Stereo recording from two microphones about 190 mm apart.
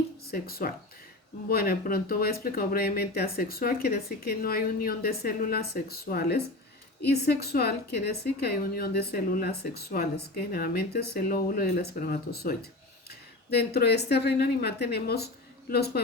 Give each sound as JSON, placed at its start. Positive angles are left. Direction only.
{"t": 0.3, "sound": "a woman's voice", "side_deg": 55}
{"t": 13.6, "sound": "a woman's voice", "side_deg": 60}